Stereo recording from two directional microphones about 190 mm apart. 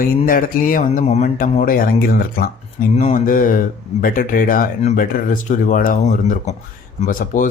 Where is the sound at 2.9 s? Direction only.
35° left (ahead or behind).